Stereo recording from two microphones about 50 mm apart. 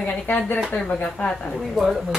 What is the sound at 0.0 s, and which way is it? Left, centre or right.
Speech, left.